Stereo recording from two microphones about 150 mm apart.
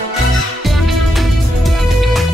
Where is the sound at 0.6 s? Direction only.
Centre (ahead or behind).